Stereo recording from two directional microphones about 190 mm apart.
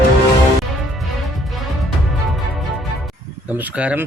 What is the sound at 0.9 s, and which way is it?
Music, centre (ahead or behind).